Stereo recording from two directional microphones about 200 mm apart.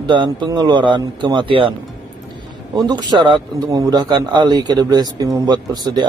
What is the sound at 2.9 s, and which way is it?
A man's voice, 20° right (ahead or behind).